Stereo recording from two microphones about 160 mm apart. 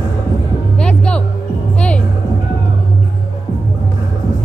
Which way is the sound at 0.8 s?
5° left (ahead or behind).